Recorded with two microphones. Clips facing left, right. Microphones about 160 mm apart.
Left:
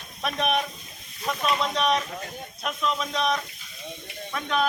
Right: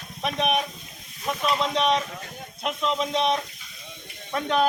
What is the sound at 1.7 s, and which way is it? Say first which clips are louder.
A man's voice: right 1 dB; 25° right (ahead or behind).